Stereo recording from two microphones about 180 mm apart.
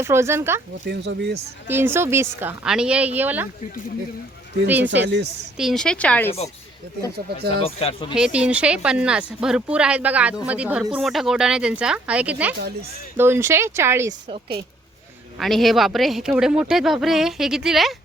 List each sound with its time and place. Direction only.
0.0 s speech: 15° right (ahead or behind)
0.9 s speech: 75° right (ahead or behind)
1.6 s speech: 10° right (ahead or behind)
4.6 s speech: 10° right (ahead or behind)
5.0 s speech: 70° right (ahead or behind)
5.5 s speech: centre (ahead or behind)
7.6 s speech: 30° left (ahead or behind)
8.1 s speech: 5° right (ahead or behind)
15.4 s speech: centre (ahead or behind)